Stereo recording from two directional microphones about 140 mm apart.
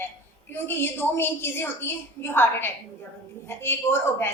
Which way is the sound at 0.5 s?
15° left (ahead or behind).